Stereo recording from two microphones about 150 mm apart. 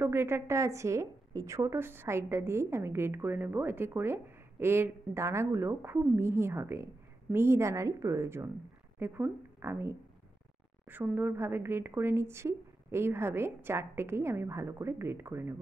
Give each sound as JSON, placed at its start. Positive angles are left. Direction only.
{"t": 0.0, "sound": "a woman's voice", "side_deg": -15}